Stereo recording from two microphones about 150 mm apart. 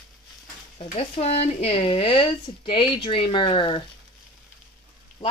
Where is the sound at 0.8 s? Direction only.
45° left (ahead or behind).